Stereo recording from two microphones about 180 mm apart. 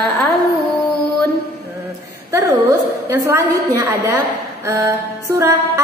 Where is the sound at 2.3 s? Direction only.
15° right (ahead or behind).